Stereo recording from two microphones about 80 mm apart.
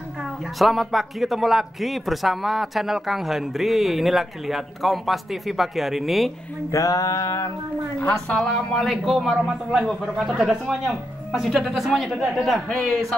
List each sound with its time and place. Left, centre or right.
0.2 s speech: centre
6.7 s music: left
8.1 s speech: centre